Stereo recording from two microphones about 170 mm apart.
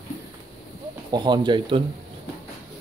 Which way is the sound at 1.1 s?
25° right (ahead or behind).